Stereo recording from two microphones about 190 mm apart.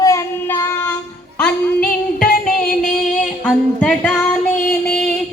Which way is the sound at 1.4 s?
5° left (ahead or behind).